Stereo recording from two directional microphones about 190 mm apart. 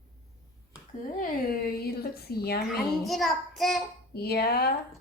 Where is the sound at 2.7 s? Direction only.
Centre (ahead or behind).